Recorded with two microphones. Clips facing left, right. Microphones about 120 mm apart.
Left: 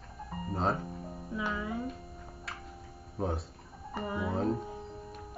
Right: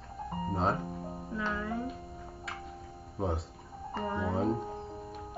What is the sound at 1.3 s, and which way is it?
Speech, 10° left (ahead or behind).